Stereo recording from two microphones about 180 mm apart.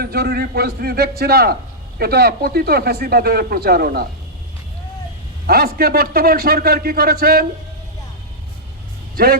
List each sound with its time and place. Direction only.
0.0 s speech: 60° right (ahead or behind)
5.5 s speech: 55° right (ahead or behind)
9.1 s speech: 60° right (ahead or behind)